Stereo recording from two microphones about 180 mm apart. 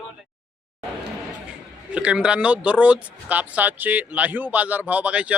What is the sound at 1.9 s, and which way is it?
Speech, 5° right (ahead or behind).